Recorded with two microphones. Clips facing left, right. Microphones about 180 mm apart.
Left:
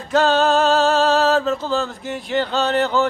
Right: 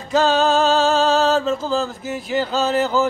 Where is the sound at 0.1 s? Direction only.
Centre (ahead or behind).